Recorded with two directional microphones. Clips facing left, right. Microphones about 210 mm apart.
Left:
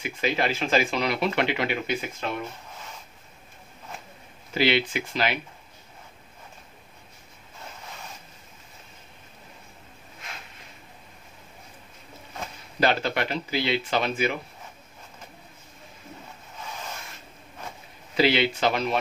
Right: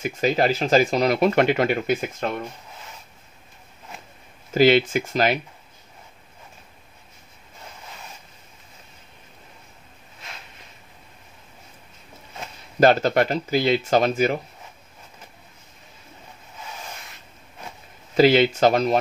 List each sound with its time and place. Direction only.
0.0 s speech: 40° right (ahead or behind)
4.6 s speech: 45° right (ahead or behind)
12.8 s speech: 45° right (ahead or behind)
18.1 s speech: 45° right (ahead or behind)